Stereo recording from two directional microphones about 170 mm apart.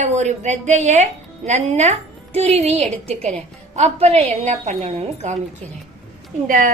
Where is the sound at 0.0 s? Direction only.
45° right (ahead or behind).